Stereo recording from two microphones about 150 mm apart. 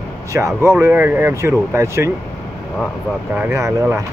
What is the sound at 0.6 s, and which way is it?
Speech, 15° right (ahead or behind).